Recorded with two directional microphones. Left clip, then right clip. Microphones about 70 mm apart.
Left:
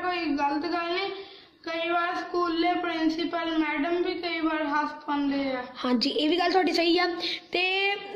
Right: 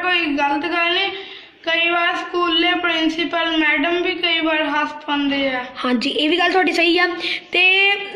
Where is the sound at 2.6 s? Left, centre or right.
Centre.